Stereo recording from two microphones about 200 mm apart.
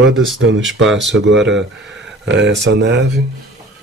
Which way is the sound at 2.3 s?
60° right (ahead or behind).